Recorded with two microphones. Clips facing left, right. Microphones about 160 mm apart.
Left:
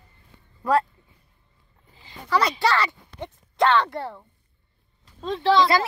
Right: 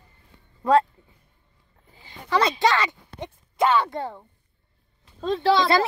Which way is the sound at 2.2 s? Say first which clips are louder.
Right 1 dB; 20° right (ahead or behind).